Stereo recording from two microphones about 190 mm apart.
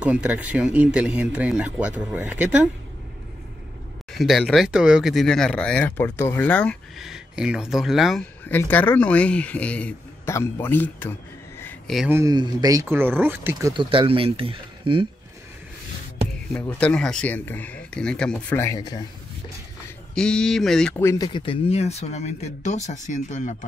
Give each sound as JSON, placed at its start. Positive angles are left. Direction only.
{"t": 0.0, "sound": "speech", "side_deg": -5}
{"t": 4.1, "sound": "speech", "side_deg": 0}
{"t": 12.1, "sound": "speech", "side_deg": -15}
{"t": 13.8, "sound": "speech", "side_deg": -30}
{"t": 16.5, "sound": "speech", "side_deg": 5}
{"t": 20.2, "sound": "speech", "side_deg": 5}